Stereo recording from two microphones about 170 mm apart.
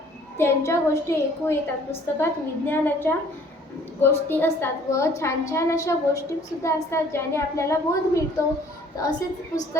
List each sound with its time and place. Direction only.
0.3 s a woman's voice: 15° left (ahead or behind)